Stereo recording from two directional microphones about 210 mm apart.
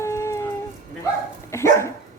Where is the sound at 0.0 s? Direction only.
15° left (ahead or behind).